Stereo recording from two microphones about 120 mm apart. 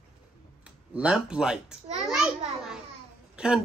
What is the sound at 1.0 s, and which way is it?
Speech, 5° right (ahead or behind).